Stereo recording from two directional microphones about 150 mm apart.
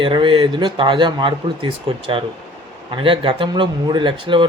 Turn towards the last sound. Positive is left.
turn(degrees=-35)  # may be behind; listen again after turning